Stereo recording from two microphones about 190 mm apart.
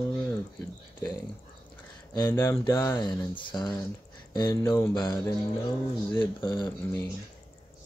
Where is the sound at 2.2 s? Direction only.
15° left (ahead or behind).